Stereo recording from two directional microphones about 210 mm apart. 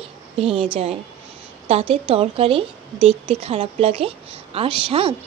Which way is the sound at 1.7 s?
30° right (ahead or behind).